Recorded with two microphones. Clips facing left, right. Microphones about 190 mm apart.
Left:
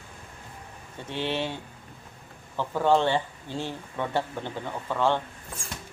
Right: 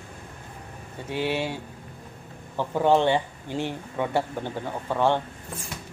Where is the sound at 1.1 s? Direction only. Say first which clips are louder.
Right 3 dB; 10° right (ahead or behind).